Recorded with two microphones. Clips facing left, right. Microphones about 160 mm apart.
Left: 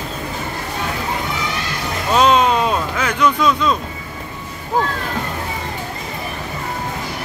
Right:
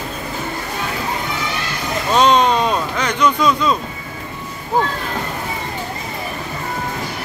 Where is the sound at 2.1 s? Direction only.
5° left (ahead or behind).